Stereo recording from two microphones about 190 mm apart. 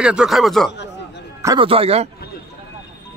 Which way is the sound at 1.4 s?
25° right (ahead or behind).